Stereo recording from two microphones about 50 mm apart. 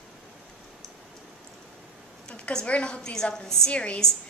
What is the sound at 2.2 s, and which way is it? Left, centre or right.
A woman's voice, centre.